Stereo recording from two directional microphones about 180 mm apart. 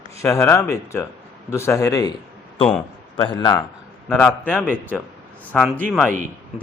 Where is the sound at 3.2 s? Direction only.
25° left (ahead or behind).